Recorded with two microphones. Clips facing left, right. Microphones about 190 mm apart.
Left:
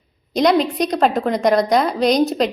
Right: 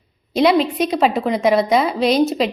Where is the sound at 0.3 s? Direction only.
Centre (ahead or behind).